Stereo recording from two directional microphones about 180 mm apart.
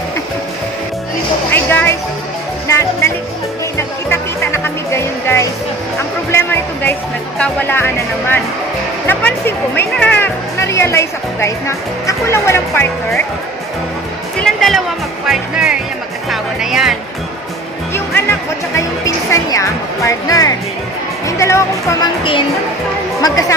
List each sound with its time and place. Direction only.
1.5 s music: 10° left (ahead or behind)
6.3 s speech: 10° left (ahead or behind)
14.4 s music: centre (ahead or behind)
15.2 s speech: 5° right (ahead or behind)
18.8 s speech: 15° left (ahead or behind)